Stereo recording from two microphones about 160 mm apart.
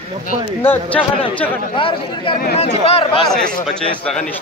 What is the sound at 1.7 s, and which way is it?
Speech, 30° left (ahead or behind).